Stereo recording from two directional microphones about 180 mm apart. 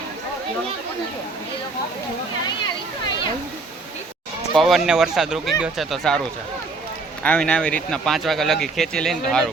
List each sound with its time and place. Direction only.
4.5 s speech: centre (ahead or behind)